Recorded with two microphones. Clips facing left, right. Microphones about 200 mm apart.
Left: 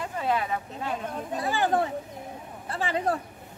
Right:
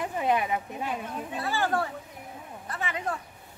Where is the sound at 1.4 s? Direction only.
20° left (ahead or behind).